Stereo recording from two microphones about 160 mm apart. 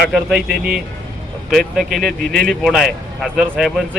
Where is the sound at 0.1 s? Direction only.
5° right (ahead or behind).